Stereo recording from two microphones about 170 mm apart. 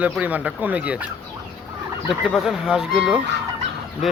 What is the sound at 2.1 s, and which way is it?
Speech, centre (ahead or behind).